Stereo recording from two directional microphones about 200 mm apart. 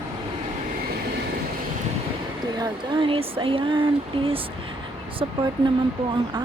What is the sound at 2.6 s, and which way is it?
Speech, 25° right (ahead or behind).